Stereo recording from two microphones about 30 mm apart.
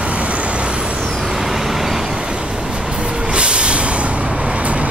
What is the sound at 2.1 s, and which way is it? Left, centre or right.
Vehicle, right.